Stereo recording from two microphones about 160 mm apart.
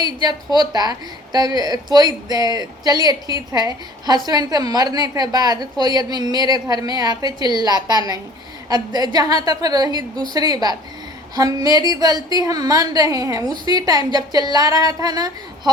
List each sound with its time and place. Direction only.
0.0 s a woman's voice: 25° right (ahead or behind)